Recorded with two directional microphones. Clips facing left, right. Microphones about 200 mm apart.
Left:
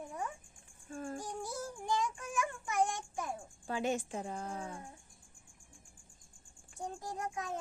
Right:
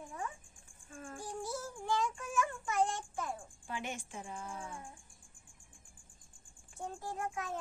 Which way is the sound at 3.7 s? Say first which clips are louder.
Left 8 dB; 40° left (ahead or behind).